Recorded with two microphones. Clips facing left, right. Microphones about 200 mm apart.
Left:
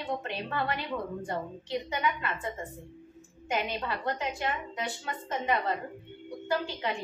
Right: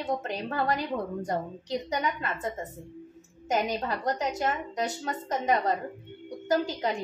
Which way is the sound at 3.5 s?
40° right (ahead or behind).